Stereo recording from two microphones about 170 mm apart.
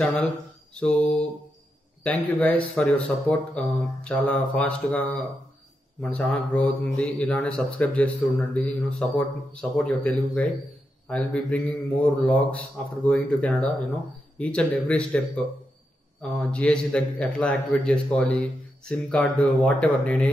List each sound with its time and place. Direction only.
0.0 s mantra: centre (ahead or behind)
2.0 s a man's voice: 10° left (ahead or behind)